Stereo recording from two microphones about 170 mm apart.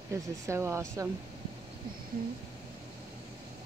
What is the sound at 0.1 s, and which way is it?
Speech, 15° right (ahead or behind).